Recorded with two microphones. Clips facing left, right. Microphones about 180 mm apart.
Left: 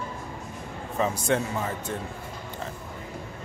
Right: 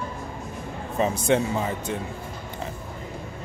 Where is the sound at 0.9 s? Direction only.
20° right (ahead or behind).